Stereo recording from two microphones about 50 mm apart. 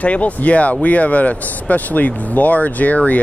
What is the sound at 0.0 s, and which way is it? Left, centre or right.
Speech, left.